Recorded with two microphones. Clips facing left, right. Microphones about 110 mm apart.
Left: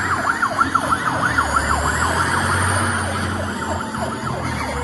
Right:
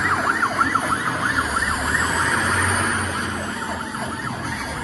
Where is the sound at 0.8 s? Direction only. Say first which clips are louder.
Left 3 dB; 30° left (ahead or behind).